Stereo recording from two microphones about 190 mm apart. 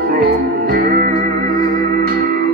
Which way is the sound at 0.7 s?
55° right (ahead or behind).